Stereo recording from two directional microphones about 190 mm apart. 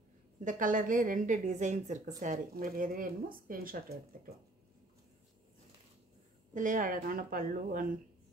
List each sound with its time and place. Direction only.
0.4 s a woman's voice: 45° right (ahead or behind)
6.5 s speech: 45° right (ahead or behind)